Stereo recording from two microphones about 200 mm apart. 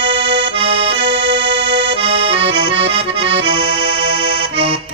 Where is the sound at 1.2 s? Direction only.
60° right (ahead or behind).